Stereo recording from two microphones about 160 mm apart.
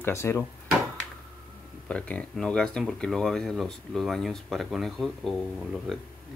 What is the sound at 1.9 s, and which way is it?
Speech, 10° left (ahead or behind).